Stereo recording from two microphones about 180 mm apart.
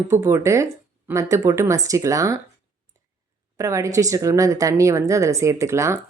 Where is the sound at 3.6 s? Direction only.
15° right (ahead or behind).